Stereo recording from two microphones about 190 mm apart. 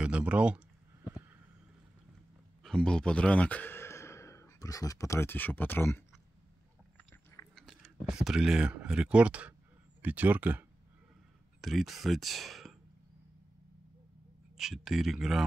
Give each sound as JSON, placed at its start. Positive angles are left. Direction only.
{"t": 0.0, "sound": "a sound", "side_deg": -5}
{"t": 2.6, "sound": "speech", "side_deg": 5}
{"t": 7.0, "sound": "chewing", "side_deg": 5}
{"t": 10.0, "sound": "speech", "side_deg": -10}
{"t": 11.6, "sound": "speech", "side_deg": 0}
{"t": 14.6, "sound": "speech", "side_deg": 0}